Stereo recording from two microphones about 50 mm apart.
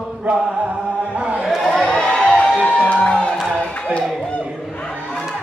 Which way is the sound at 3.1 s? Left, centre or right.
Left.